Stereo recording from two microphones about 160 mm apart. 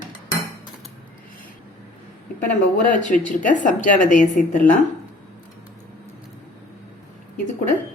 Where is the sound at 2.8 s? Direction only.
55° left (ahead or behind).